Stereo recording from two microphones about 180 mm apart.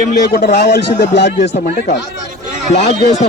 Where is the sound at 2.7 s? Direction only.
40° left (ahead or behind).